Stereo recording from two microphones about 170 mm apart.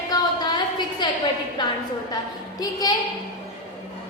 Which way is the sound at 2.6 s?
20° left (ahead or behind).